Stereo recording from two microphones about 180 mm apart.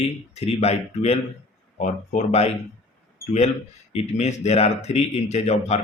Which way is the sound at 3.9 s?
35° left (ahead or behind).